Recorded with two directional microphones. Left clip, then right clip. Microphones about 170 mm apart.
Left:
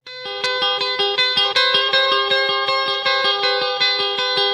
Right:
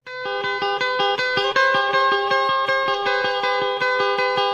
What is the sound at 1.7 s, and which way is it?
Music, 45° left (ahead or behind).